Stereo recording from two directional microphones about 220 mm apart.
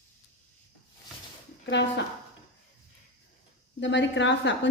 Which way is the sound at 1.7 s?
55° left (ahead or behind).